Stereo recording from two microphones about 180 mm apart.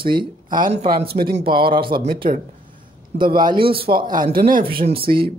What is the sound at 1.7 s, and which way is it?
Speech, 25° right (ahead or behind).